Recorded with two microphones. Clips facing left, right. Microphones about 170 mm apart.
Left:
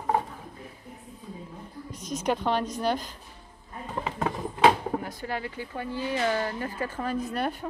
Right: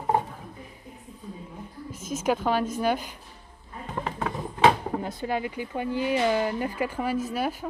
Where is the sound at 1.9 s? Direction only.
5° right (ahead or behind).